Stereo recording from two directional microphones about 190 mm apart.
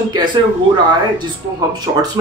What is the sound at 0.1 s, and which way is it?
Speech, 25° right (ahead or behind).